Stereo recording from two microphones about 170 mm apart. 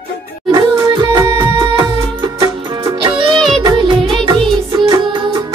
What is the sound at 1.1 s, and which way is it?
Music, 20° right (ahead or behind).